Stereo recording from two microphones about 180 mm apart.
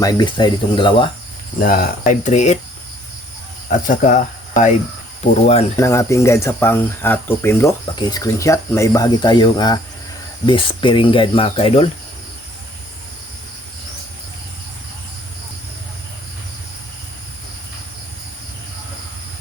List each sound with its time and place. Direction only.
0.0 s speech: 25° left (ahead or behind)
1.6 s speech: 50° left (ahead or behind)
3.7 s speech: 45° left (ahead or behind)
5.7 s speech: 15° left (ahead or behind)